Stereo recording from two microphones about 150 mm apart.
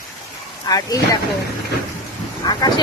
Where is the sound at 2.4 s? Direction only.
30° left (ahead or behind).